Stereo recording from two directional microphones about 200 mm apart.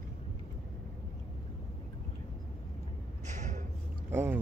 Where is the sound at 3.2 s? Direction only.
35° right (ahead or behind).